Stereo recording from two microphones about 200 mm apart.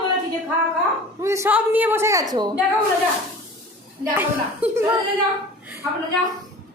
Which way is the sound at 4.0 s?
10° right (ahead or behind).